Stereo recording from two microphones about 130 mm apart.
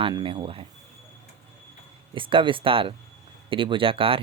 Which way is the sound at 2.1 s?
40° right (ahead or behind).